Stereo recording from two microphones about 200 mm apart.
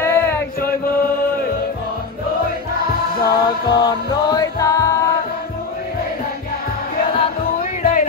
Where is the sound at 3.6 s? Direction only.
25° left (ahead or behind).